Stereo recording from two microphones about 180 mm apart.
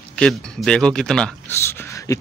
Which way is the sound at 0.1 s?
5° left (ahead or behind).